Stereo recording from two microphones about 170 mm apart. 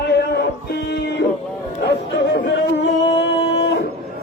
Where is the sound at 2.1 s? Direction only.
90° left.